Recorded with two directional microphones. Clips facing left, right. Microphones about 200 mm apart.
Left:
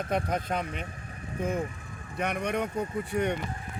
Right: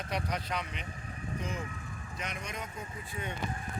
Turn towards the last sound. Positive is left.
turn(degrees=70)  # may be behind; listen again after turning